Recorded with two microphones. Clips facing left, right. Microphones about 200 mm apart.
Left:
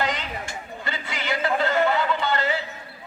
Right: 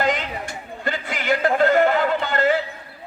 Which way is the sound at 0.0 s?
50° right (ahead or behind).